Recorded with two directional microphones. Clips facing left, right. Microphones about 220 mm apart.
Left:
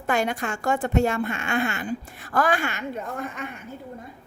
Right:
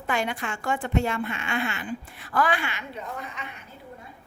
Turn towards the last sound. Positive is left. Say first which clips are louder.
# left 5 dB
turn(degrees=50)  # may be behind; listen again after turning